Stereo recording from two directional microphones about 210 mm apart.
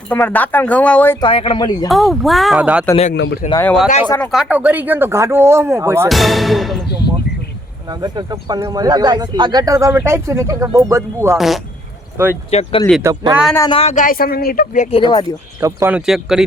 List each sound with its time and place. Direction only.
0.1 s speech: 5° left (ahead or behind)
1.2 s speech: 25° left (ahead or behind)
1.9 s speech: centre (ahead or behind)
2.9 s speech: 30° left (ahead or behind)
3.6 s speech: 5° left (ahead or behind)
4.3 s speech: 5° right (ahead or behind)
6.1 s speech: centre (ahead or behind)
7.9 s speech: 20° right (ahead or behind)
11.3 s speech: centre (ahead or behind)
12.5 s speech: 30° left (ahead or behind)
13.0 s speech: 15° right (ahead or behind)
13.6 s speech: 25° left (ahead or behind)
15.6 s speech: 10° right (ahead or behind)